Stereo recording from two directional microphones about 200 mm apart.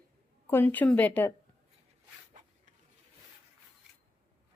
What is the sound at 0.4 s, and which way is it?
Speech, 10° left (ahead or behind).